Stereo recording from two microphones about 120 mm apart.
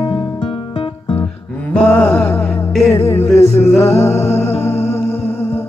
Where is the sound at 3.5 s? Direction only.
60° left (ahead or behind).